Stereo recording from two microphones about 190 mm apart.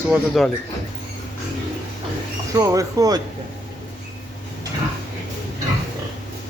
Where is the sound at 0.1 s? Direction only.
Centre (ahead or behind).